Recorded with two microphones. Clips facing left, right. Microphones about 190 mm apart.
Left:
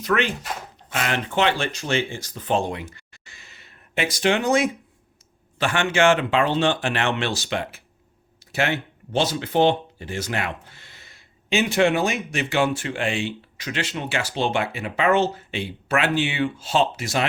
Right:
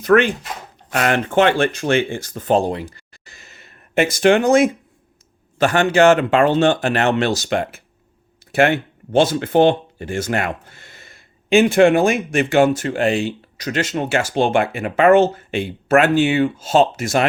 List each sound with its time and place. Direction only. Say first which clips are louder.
0.0 s speech: right 9 dB; 50° right (ahead or behind)